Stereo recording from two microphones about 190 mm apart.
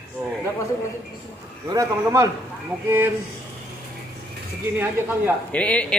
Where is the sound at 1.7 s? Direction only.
15° right (ahead or behind).